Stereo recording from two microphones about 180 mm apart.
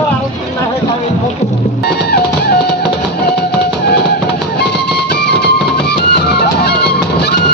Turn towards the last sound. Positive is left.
turn(degrees=65)  # may be behind; listen again after turning